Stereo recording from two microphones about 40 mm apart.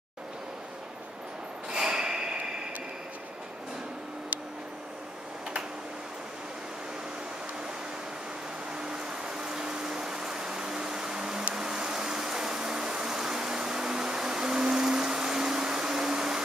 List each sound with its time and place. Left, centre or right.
1.7 s snort: centre
8.7 s a sound: right
11.5 s vehicle: centre